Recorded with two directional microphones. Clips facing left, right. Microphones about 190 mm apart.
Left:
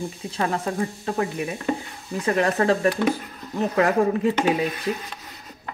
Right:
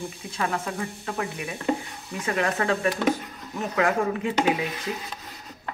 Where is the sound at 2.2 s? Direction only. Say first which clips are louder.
Left 5 dB; 35° left (ahead or behind).